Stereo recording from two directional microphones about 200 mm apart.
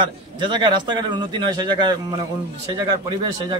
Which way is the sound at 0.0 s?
25° right (ahead or behind).